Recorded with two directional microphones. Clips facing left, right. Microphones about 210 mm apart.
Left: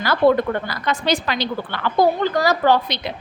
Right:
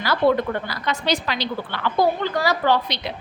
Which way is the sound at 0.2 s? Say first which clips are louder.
Left 3 dB; 50° left (ahead or behind).